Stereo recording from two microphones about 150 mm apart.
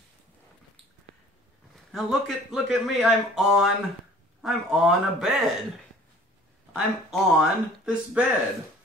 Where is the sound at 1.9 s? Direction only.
Centre (ahead or behind).